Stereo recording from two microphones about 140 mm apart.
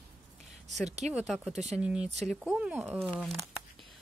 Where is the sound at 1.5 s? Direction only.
55° right (ahead or behind).